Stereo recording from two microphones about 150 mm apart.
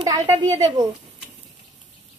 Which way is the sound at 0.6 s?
25° right (ahead or behind).